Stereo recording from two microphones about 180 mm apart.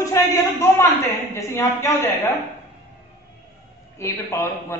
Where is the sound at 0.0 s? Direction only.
15° left (ahead or behind).